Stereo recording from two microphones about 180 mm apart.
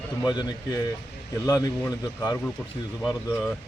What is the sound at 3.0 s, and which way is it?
Speech, centre (ahead or behind).